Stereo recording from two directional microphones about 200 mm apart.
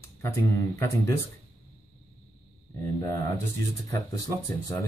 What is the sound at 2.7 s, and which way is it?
Speech, 15° left (ahead or behind).